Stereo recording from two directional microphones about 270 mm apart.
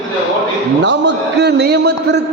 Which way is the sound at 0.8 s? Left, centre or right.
Right.